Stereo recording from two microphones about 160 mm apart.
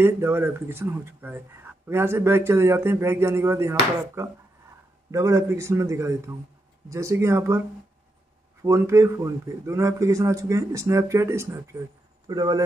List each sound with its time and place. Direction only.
0.0 s a man's voice: 15° right (ahead or behind)
8.6 s a man's voice: 20° right (ahead or behind)